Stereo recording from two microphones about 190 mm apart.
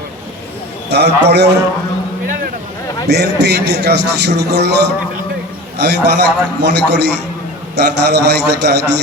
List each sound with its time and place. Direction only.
0.9 s a man's voice: 60° right (ahead or behind)
3.1 s a man's voice: 60° right (ahead or behind)
5.8 s a man's voice: 65° right (ahead or behind)